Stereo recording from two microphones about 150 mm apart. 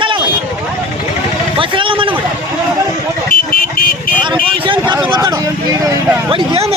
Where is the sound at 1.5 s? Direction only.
35° right (ahead or behind).